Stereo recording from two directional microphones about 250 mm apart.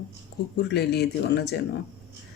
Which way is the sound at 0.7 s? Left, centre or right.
Left.